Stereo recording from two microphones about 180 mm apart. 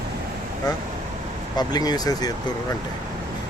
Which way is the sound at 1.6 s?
20° left (ahead or behind).